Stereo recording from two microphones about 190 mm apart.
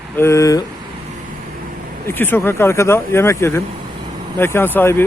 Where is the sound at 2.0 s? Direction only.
10° left (ahead or behind).